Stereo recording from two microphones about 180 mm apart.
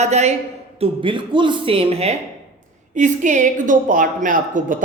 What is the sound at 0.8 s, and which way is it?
A woman's voice, 30° right (ahead or behind).